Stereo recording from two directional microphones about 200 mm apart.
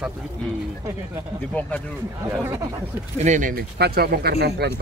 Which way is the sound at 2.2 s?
15° right (ahead or behind).